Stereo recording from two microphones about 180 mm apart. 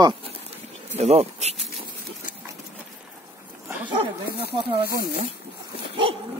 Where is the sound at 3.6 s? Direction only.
10° right (ahead or behind).